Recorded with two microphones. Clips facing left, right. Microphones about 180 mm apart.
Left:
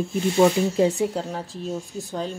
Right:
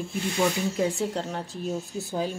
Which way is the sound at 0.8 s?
20° left (ahead or behind).